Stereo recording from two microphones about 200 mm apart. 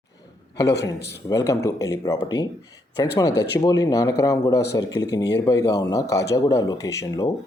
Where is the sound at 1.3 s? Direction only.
15° left (ahead or behind).